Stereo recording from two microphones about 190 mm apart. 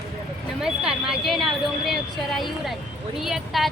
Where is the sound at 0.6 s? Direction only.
5° right (ahead or behind).